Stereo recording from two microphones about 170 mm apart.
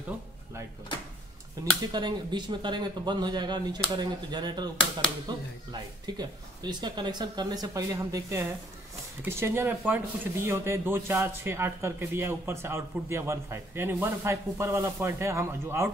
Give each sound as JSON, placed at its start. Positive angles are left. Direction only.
{"t": 1.9, "sound": "speech", "side_deg": -25}